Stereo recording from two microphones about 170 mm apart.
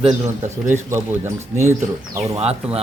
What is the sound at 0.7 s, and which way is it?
Speech, 15° right (ahead or behind).